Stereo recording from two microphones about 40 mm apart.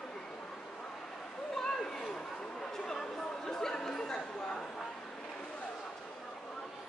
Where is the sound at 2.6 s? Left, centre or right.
Centre.